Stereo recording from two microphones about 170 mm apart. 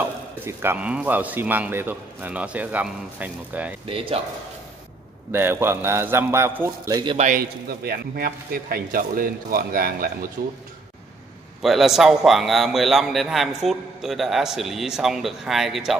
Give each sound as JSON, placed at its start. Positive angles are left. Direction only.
{"t": 0.0, "sound": "a man's voice", "side_deg": -15}
{"t": 3.8, "sound": "speech", "side_deg": -30}
{"t": 5.3, "sound": "a man's voice", "side_deg": -15}
{"t": 6.9, "sound": "a man's voice", "side_deg": -25}
{"t": 7.2, "sound": "a man's voice", "side_deg": -55}
{"t": 11.6, "sound": "a man's voice", "side_deg": 0}